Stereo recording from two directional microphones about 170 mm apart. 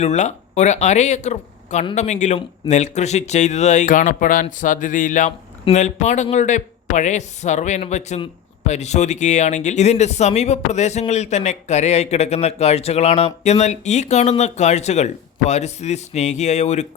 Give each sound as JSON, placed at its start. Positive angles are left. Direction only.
{"t": 0.0, "sound": "speech", "side_deg": 40}